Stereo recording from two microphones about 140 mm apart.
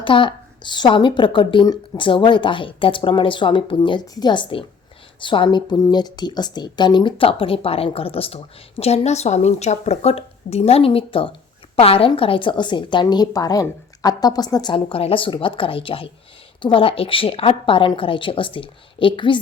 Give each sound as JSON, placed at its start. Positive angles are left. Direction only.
{"t": 0.0, "sound": "speech", "side_deg": 35}